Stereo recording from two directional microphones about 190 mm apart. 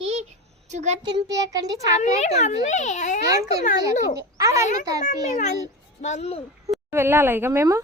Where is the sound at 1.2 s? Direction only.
20° right (ahead or behind).